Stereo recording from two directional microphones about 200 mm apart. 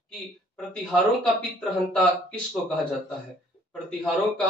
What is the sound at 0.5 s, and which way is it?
Speech, centre (ahead or behind).